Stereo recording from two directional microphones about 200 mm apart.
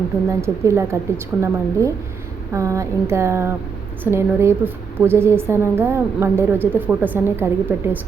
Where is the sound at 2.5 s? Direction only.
15° right (ahead or behind).